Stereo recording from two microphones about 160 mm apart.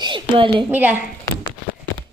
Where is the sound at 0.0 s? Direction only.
30° right (ahead or behind).